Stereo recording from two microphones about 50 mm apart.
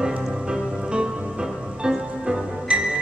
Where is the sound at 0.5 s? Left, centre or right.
Centre.